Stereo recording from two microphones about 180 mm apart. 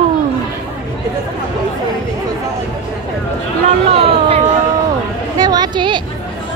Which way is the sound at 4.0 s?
35° right (ahead or behind).